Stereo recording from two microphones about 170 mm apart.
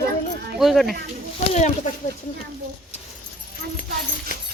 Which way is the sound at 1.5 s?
45° left (ahead or behind).